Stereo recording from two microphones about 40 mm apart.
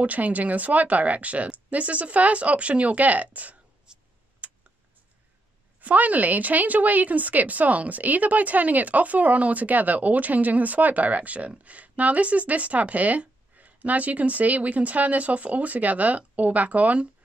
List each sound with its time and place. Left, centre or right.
0.0 s speech: right
3.9 s tick-tock: right
4.4 s tick: right
5.8 s speech: right